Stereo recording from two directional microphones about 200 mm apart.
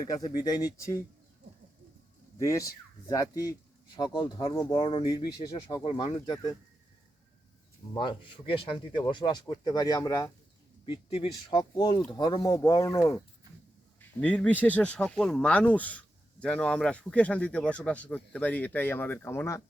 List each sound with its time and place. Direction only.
0.0 s speech: 20° left (ahead or behind)
2.4 s speech: 15° left (ahead or behind)
7.9 s speech: 25° left (ahead or behind)
10.8 s speech: 25° left (ahead or behind)